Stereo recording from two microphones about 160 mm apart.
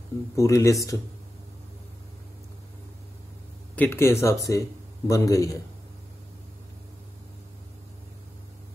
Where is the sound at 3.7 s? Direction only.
10° left (ahead or behind).